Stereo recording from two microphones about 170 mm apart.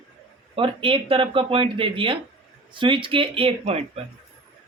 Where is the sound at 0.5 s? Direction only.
30° right (ahead or behind).